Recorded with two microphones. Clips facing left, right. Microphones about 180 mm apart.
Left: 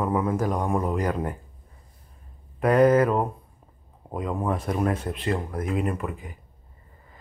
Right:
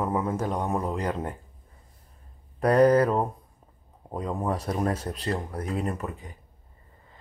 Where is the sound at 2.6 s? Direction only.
35° right (ahead or behind).